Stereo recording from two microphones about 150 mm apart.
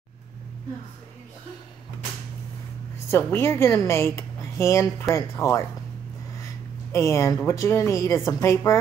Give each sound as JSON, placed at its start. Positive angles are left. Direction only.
{"t": 3.1, "sound": "a woman's voice", "side_deg": 15}
{"t": 6.3, "sound": "a sound", "side_deg": 20}
{"t": 7.3, "sound": "speech", "side_deg": 20}